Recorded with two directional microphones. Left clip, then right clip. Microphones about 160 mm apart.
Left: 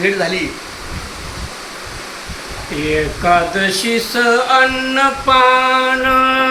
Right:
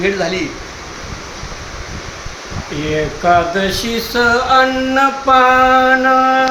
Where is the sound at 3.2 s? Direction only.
25° right (ahead or behind).